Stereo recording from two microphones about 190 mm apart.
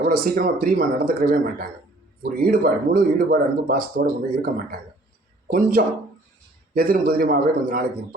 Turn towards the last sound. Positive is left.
turn(degrees=-50)  # may be behind; listen again after turning